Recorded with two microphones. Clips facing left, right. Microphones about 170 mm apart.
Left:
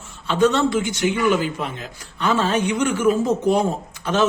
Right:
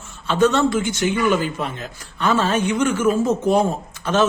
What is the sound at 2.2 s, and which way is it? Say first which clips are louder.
Speech: right 1 dB; 15° left (ahead or behind).